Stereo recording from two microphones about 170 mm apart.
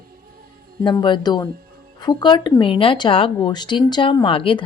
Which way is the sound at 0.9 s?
25° left (ahead or behind).